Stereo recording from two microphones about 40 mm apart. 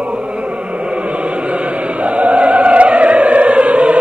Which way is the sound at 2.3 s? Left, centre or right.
Right.